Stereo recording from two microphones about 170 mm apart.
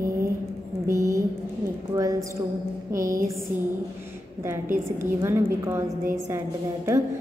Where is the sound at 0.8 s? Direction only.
20° right (ahead or behind).